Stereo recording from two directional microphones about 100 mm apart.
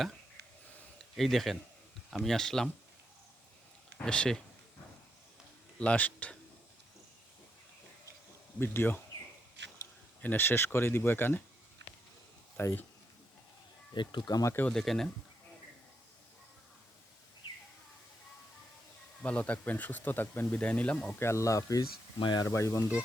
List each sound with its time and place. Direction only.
1.1 s a man's voice: centre (ahead or behind)
4.0 s speech: 10° left (ahead or behind)
5.8 s speech: 15° left (ahead or behind)
8.5 s speech: 20° left (ahead or behind)
10.2 s speech: 20° left (ahead or behind)
12.5 s speech: 20° left (ahead or behind)
13.9 s speech: 50° left (ahead or behind)
14.7 s speech: 5° left (ahead or behind)
19.2 s speech: 15° left (ahead or behind)
21.2 s speech: 30° left (ahead or behind)
22.2 s speech: 50° left (ahead or behind)
22.4 s speech: 30° left (ahead or behind)